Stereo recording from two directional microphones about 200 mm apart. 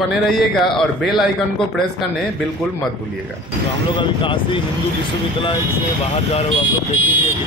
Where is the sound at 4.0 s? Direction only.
25° left (ahead or behind).